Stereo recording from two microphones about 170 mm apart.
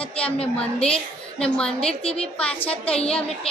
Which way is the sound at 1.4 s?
5° left (ahead or behind).